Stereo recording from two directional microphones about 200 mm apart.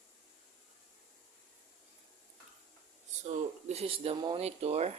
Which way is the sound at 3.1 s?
35° right (ahead or behind).